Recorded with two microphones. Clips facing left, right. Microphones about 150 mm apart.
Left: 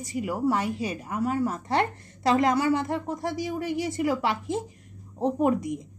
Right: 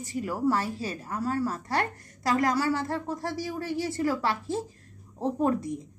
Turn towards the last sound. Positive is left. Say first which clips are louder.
# left 2 dB
turn(degrees=15)  # may be behind; listen again after turning